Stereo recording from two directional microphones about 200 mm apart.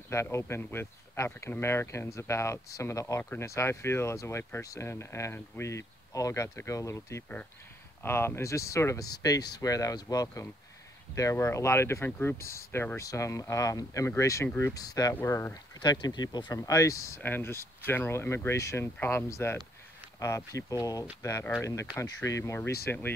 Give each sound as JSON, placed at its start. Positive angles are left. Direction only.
{"t": 0.1, "sound": "speech", "side_deg": 15}